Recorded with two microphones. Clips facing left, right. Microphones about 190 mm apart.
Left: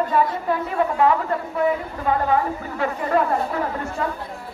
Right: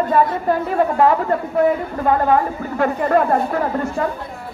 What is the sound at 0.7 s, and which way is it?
Speech, 40° right (ahead or behind).